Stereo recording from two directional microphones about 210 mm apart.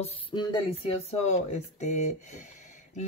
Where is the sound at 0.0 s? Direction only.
25° left (ahead or behind).